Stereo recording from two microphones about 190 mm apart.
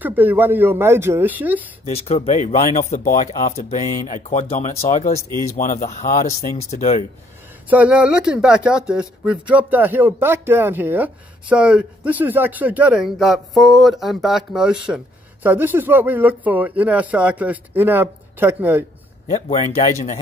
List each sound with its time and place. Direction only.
0.0 s speech: 10° right (ahead or behind)
1.9 s speech: 30° left (ahead or behind)
7.7 s speech: 5° right (ahead or behind)
19.3 s speech: 35° left (ahead or behind)